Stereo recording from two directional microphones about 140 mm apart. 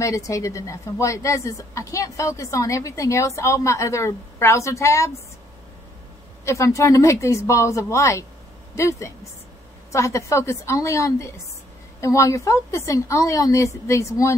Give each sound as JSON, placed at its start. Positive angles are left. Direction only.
{"t": 0.0, "sound": "a woman's voice", "side_deg": 25}
{"t": 6.4, "sound": "a woman's voice", "side_deg": 20}